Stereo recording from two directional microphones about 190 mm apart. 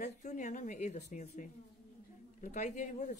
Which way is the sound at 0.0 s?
40° left (ahead or behind).